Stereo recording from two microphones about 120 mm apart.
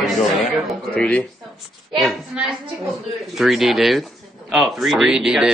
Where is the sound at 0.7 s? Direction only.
10° left (ahead or behind).